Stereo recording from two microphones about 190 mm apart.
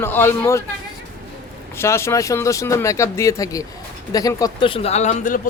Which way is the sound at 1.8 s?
15° left (ahead or behind).